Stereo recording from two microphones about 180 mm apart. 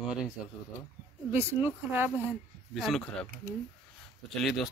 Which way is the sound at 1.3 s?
10° right (ahead or behind).